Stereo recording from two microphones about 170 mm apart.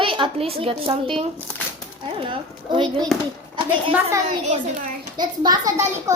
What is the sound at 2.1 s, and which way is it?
Speech, 30° right (ahead or behind).